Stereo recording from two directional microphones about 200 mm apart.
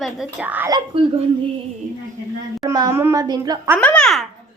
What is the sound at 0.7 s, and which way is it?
Speech, 20° right (ahead or behind).